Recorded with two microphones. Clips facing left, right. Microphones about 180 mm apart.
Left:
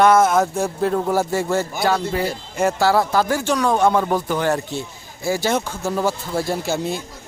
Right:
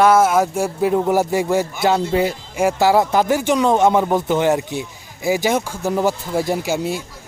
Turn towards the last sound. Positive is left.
turn(degrees=-10)  # may be behind; listen again after turning